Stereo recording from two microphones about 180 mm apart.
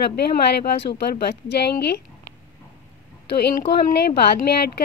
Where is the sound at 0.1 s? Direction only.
60° left (ahead or behind).